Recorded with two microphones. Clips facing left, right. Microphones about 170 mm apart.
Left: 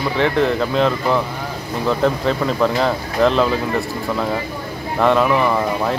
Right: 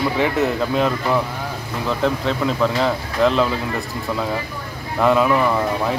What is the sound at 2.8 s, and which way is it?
Speech, centre (ahead or behind).